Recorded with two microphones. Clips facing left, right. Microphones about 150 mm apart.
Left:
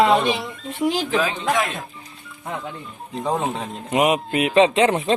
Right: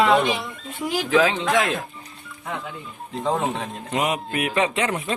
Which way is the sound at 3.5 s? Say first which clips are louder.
Left 3 dB; 20° left (ahead or behind).